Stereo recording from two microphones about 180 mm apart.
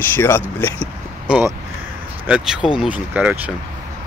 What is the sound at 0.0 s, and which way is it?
Speech, 10° left (ahead or behind).